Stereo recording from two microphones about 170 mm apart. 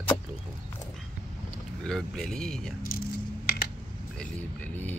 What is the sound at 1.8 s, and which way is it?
Speech, 5° left (ahead or behind).